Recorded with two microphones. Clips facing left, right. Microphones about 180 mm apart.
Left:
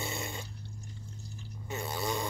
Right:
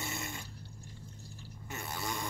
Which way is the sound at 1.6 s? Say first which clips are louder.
Left 5 dB; 20° left (ahead or behind).